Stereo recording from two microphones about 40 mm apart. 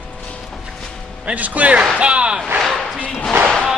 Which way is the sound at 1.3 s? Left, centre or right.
Right.